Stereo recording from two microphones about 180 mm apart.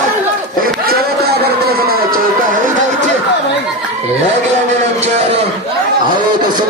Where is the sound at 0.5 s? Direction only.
55° right (ahead or behind).